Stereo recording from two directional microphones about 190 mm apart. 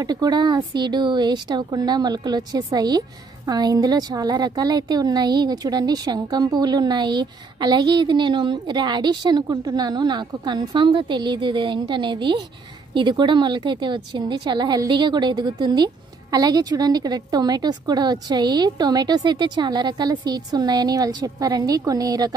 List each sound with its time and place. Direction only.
0.0 s a woman's voice: 20° right (ahead or behind)